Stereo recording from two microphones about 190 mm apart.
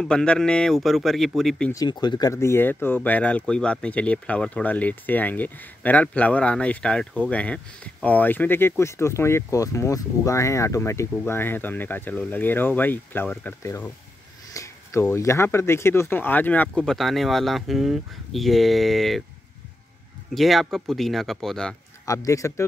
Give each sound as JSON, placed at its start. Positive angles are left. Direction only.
{"t": 0.0, "sound": "speech", "side_deg": 5}
{"t": 1.7, "sound": "speech", "side_deg": 20}
{"t": 20.3, "sound": "speech", "side_deg": 0}
{"t": 22.0, "sound": "speech", "side_deg": 15}